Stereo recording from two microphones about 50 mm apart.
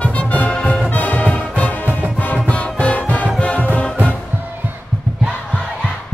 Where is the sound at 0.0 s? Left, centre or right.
Left.